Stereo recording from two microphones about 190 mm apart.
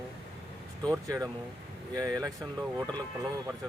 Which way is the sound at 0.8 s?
15° right (ahead or behind).